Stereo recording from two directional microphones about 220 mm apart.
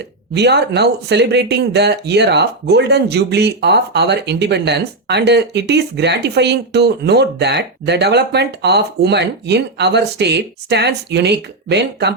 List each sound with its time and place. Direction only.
0.3 s speech: 50° right (ahead or behind)